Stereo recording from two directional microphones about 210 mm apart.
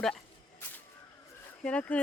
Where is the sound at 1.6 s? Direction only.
5° left (ahead or behind).